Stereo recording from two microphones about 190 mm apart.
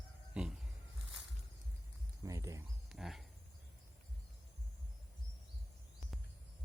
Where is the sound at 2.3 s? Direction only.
15° right (ahead or behind).